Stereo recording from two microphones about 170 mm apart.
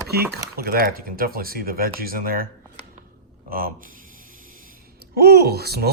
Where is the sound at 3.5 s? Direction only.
60° right (ahead or behind).